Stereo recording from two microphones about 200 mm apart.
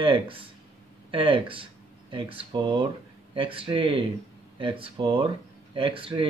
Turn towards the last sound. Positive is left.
turn(degrees=-25)  # may be behind; listen again after turning